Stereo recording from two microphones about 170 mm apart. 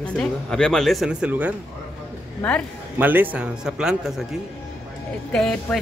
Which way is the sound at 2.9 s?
10° right (ahead or behind).